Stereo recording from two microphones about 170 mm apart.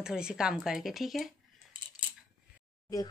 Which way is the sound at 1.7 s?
30° right (ahead or behind).